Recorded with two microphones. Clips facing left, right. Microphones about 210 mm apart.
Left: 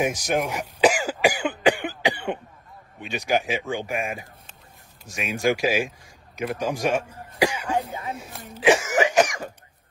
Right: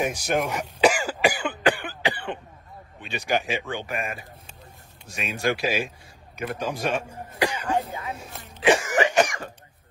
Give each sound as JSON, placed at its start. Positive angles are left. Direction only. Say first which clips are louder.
{"t": 0.2, "sound": "speech", "louder": "even", "side_deg": 15}
{"t": 7.9, "sound": "speech", "louder": "left 1 dB", "side_deg": 25}
{"t": 8.5, "sound": "cough", "louder": "left 1 dB", "side_deg": 10}